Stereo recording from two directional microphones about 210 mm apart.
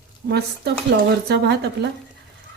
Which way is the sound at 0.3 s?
50° right (ahead or behind).